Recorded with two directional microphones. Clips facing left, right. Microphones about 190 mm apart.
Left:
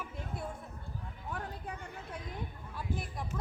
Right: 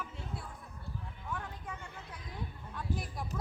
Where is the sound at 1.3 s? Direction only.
35° left (ahead or behind).